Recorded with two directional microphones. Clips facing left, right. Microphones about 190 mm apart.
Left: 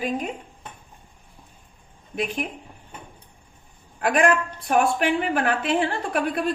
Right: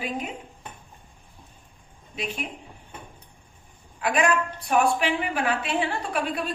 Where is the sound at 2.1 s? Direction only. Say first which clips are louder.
Left 6 dB; 50° left (ahead or behind).